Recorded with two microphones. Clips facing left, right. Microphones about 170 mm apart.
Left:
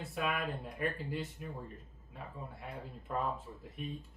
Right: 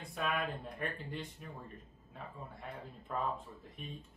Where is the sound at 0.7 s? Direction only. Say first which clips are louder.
Left 4 dB; 5° left (ahead or behind).